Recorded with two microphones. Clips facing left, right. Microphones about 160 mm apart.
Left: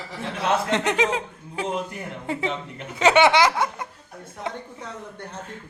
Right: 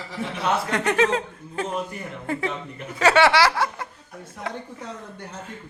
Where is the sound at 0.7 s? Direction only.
15° left (ahead or behind).